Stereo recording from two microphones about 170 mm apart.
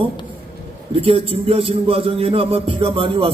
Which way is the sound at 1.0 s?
35° right (ahead or behind).